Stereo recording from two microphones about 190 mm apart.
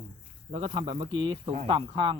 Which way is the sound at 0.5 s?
30° right (ahead or behind).